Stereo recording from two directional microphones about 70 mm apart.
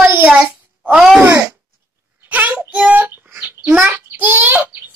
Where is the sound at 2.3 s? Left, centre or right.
Right.